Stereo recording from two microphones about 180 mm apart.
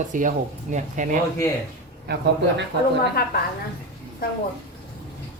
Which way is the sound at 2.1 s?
65° right (ahead or behind).